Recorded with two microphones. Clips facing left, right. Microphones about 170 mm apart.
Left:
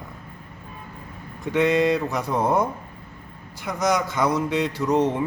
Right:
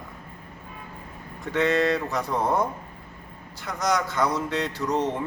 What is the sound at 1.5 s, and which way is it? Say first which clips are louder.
Speech: left 3 dB; 15° left (ahead or behind).